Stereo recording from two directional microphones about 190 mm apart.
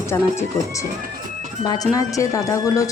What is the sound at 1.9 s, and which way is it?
Speech, 15° left (ahead or behind).